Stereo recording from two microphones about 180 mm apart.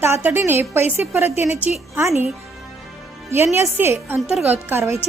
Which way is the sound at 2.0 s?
15° right (ahead or behind).